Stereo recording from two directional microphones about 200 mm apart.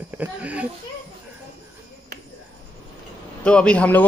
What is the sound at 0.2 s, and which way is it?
Speech, 5° right (ahead or behind).